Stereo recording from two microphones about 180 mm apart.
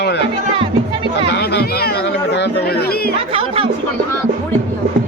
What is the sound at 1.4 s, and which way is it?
Chatter, 65° left (ahead or behind).